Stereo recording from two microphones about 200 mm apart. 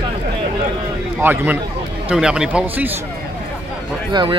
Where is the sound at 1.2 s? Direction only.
10° right (ahead or behind).